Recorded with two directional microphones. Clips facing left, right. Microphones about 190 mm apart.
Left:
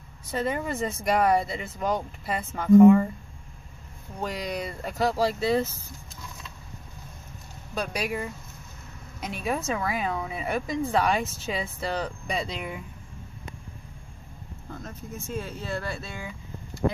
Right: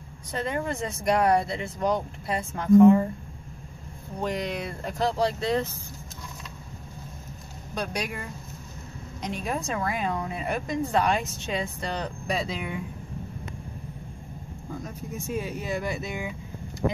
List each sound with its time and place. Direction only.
0.3 s a woman's voice: 5° left (ahead or behind)
4.2 s a woman's voice: centre (ahead or behind)
7.7 s a woman's voice: 5° left (ahead or behind)
9.2 s a woman's voice: 5° left (ahead or behind)
14.7 s speech: 10° right (ahead or behind)